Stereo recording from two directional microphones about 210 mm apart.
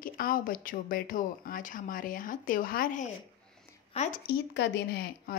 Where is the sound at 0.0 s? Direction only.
40° left (ahead or behind).